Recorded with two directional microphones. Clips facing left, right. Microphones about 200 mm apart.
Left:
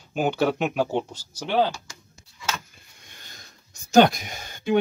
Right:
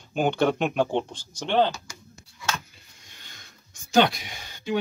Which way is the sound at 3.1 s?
40° left (ahead or behind).